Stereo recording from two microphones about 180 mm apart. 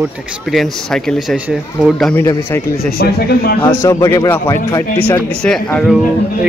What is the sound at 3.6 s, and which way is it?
A man's voice, 20° left (ahead or behind).